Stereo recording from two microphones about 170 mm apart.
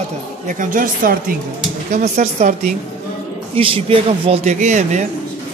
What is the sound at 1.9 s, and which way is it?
Speech, 45° right (ahead or behind).